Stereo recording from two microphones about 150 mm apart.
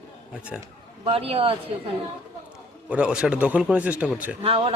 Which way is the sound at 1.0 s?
40° right (ahead or behind).